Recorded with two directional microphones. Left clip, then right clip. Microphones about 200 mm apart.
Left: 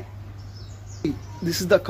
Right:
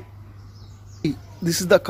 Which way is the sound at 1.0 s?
30° right (ahead or behind).